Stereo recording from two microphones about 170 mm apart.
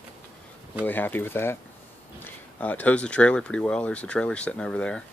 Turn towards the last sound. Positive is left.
turn(degrees=5)  # may be behind; listen again after turning